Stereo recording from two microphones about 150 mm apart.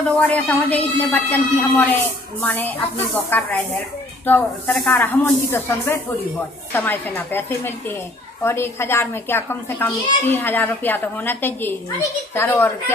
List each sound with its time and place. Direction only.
0.3 s a child's voice: 10° left (ahead or behind)